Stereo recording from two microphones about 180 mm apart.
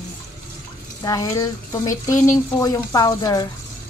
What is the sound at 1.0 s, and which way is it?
Speech, 20° left (ahead or behind).